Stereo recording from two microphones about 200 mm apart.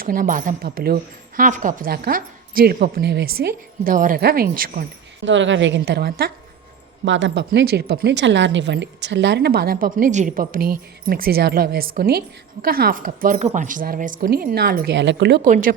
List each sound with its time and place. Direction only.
0.0 s speech: 45° right (ahead or behind)
5.2 s a woman's voice: 65° right (ahead or behind); by 6.3 s 50° right (ahead or behind)
7.0 s speech: 65° right (ahead or behind)
15.4 s speech: 40° right (ahead or behind)